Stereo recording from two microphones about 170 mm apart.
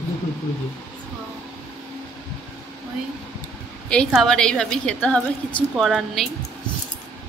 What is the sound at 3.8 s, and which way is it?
A woman's voice, 5° left (ahead or behind).